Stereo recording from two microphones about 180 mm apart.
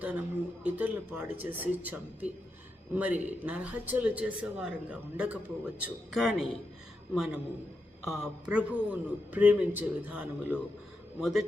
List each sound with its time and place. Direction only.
0.0 s a man's voice: 10° right (ahead or behind)